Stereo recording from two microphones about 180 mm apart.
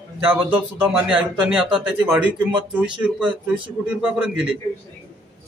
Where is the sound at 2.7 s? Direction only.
5° right (ahead or behind).